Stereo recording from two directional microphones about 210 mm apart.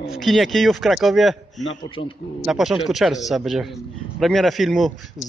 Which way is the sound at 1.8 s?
25° left (ahead or behind).